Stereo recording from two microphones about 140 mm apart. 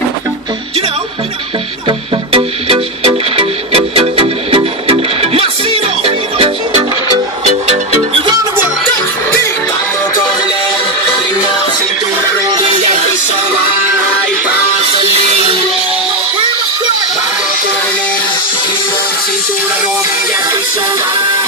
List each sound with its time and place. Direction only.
1.9 s music: 40° right (ahead or behind)
12.7 s music: 55° right (ahead or behind)
15.0 s music: 45° right (ahead or behind)